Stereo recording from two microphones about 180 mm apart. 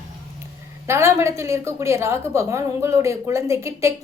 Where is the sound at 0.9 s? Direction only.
15° right (ahead or behind).